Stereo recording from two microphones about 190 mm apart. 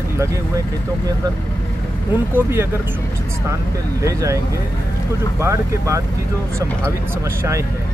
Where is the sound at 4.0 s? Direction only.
15° right (ahead or behind).